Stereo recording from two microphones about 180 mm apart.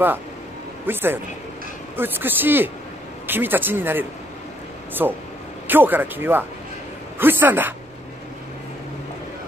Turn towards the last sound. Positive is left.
turn(degrees=-10)  # may be behind; listen again after turning